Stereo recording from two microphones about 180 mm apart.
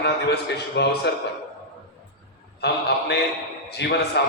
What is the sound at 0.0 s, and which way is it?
A man's voice, 65° left (ahead or behind).